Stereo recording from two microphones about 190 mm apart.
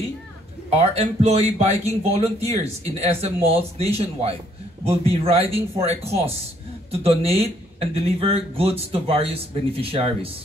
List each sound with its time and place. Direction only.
0.7 s speech: 30° right (ahead or behind)